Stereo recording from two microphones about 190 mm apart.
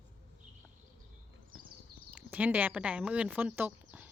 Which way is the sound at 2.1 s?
5° right (ahead or behind).